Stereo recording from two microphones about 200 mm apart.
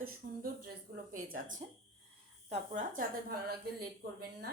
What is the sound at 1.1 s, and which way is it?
Speech, 40° right (ahead or behind).